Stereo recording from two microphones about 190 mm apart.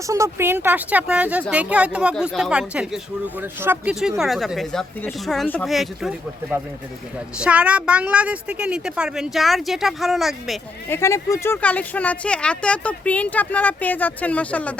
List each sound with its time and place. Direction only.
0.1 s speech: 15° right (ahead or behind)
10.8 s speech: 15° left (ahead or behind)